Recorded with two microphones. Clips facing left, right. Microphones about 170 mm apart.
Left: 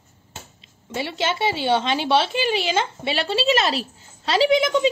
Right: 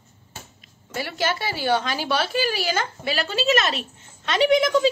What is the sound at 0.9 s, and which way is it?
A woman's voice, 25° left (ahead or behind).